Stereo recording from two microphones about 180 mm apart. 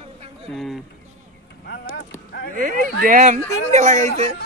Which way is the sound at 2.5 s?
45° right (ahead or behind).